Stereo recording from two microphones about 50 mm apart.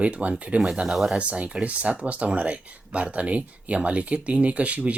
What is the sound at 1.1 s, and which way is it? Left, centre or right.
Speech, right.